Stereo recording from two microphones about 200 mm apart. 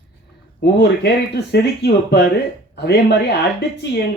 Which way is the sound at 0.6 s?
55° left (ahead or behind).